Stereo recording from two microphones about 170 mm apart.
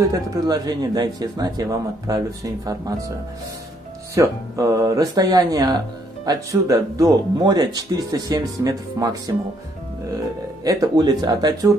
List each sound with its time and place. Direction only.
0.1 s speech: 20° right (ahead or behind)
4.1 s speech: 20° right (ahead or behind)
10.6 s speech: 20° right (ahead or behind)